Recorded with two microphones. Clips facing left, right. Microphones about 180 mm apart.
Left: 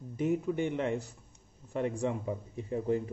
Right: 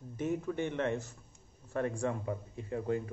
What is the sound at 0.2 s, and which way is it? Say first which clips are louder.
Speech: left 4 dB; 15° left (ahead or behind).